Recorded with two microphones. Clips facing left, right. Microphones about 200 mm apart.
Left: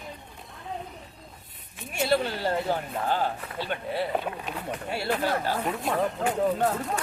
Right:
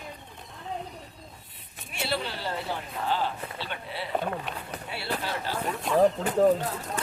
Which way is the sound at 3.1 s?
45° left (ahead or behind).